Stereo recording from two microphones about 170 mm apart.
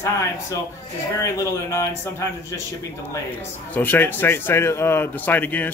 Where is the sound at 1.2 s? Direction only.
15° left (ahead or behind).